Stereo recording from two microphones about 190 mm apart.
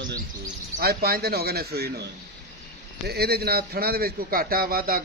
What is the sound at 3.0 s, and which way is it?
A man's voice, 55° right (ahead or behind).